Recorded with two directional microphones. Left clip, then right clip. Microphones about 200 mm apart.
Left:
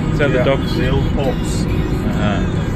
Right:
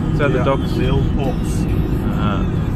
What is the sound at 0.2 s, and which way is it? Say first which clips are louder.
Speech: left 2 dB; 5° left (ahead or behind).